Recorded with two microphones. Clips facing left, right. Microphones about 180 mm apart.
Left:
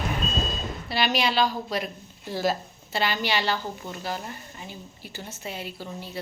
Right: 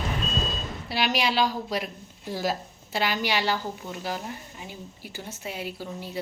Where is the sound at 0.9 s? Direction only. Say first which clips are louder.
Left 1 dB; 10° right (ahead or behind).